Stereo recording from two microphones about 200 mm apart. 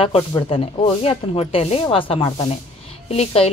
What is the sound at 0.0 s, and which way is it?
A woman's voice, 30° left (ahead or behind).